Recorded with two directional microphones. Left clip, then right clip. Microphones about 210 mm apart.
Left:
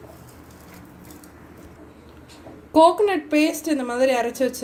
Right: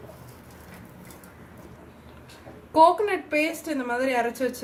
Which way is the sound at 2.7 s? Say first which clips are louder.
Left 3 dB; 30° left (ahead or behind).